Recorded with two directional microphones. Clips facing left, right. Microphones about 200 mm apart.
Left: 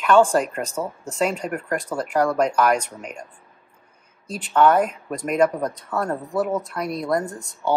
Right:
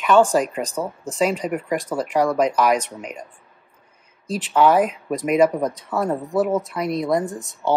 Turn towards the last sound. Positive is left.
turn(degrees=0)  # may be behind; listen again after turning